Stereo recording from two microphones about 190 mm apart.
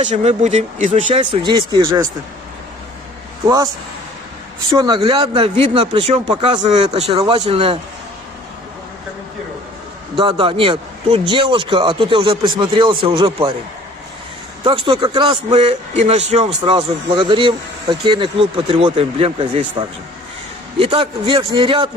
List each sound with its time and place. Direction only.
0.0 s speech: 35° right (ahead or behind)
1.2 s a man's voice: 25° right (ahead or behind)
3.4 s a man's voice: 20° right (ahead or behind)
4.7 s a man's voice: 25° right (ahead or behind)
10.2 s a man's voice: 25° right (ahead or behind)
14.8 s a man's voice: 25° right (ahead or behind)
20.7 s a man's voice: 30° right (ahead or behind)